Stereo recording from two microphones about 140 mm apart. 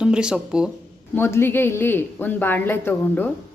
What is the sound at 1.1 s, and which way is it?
Speech, 15° left (ahead or behind).